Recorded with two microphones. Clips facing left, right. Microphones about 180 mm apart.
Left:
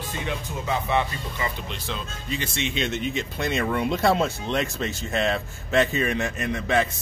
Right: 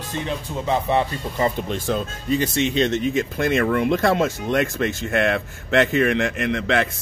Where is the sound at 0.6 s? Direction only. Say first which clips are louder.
Right 4 dB; 35° right (ahead or behind).